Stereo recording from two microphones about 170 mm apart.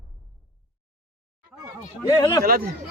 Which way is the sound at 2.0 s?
25° left (ahead or behind).